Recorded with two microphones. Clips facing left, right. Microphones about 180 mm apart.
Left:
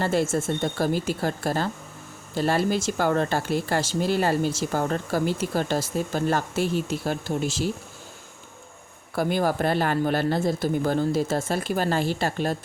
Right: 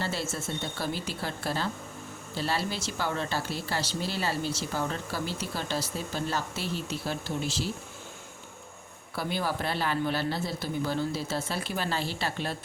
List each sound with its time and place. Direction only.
0.0 s speech: 50° left (ahead or behind)
9.1 s speech: 50° left (ahead or behind)